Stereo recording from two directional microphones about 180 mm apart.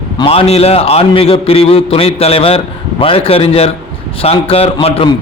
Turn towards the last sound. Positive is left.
turn(degrees=30)  # may be behind; listen again after turning